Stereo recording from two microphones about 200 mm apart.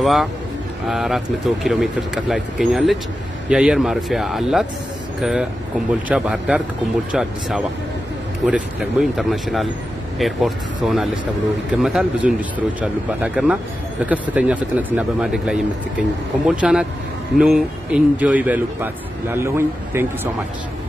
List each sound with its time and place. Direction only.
0.0 s a man's voice: centre (ahead or behind)